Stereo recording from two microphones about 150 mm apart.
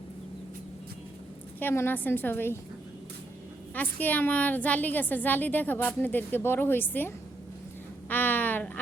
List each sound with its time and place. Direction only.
1.5 s a woman's voice: 15° left (ahead or behind)
3.8 s a woman's voice: 10° left (ahead or behind)
8.1 s a sound: 10° left (ahead or behind)